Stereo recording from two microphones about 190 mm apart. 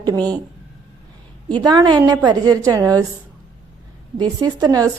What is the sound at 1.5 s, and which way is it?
A woman's voice, 20° right (ahead or behind).